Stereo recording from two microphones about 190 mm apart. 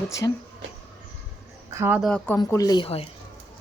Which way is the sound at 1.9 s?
5° left (ahead or behind).